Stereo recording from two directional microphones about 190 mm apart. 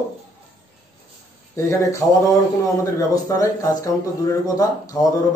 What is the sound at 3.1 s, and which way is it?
A man's voice, 15° left (ahead or behind).